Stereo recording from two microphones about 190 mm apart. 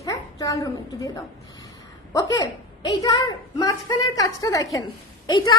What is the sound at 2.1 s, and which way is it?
A child's voice, 20° left (ahead or behind).